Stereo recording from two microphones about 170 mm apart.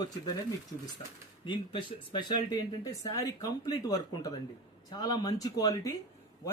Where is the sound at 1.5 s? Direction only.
30° left (ahead or behind).